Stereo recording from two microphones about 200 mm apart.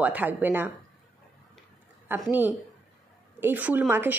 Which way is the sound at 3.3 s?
10° right (ahead or behind).